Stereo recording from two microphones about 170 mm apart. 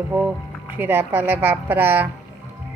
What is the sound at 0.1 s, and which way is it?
A woman's voice, 15° right (ahead or behind).